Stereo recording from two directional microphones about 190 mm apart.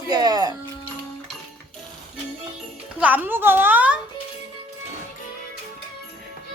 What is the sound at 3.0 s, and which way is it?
Speech, 10° right (ahead or behind).